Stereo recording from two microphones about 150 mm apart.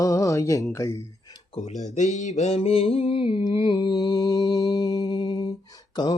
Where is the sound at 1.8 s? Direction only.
50° left (ahead or behind).